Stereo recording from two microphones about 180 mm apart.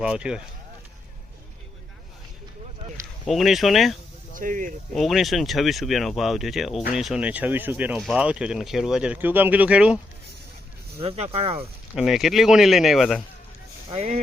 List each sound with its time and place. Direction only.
0.0 s speech: 5° right (ahead or behind)
3.2 s speech: centre (ahead or behind)
4.4 s speech: 45° right (ahead or behind)
4.9 s speech: centre (ahead or behind)
10.9 s speech: 35° right (ahead or behind)
11.9 s speech: centre (ahead or behind)
13.9 s speech: 40° right (ahead or behind)